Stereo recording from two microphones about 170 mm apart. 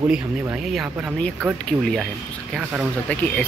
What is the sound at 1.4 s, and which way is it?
Speech, 5° left (ahead or behind).